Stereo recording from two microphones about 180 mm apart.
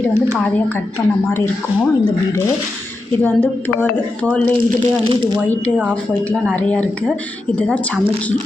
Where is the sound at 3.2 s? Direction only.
10° left (ahead or behind).